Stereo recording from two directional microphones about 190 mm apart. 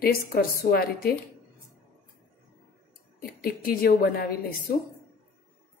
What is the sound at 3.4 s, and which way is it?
A woman's voice, 50° left (ahead or behind).